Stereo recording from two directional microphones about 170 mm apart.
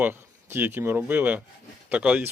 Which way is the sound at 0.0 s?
15° right (ahead or behind).